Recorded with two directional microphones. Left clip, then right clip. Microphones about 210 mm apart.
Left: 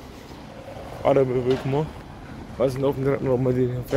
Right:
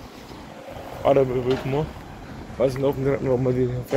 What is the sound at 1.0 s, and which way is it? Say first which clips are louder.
Speech: right 1 dB; 10° left (ahead or behind).